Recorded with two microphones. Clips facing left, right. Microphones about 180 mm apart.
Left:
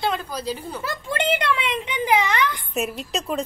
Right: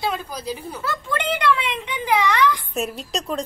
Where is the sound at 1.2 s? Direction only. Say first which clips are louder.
Right 1 dB; 25° left (ahead or behind).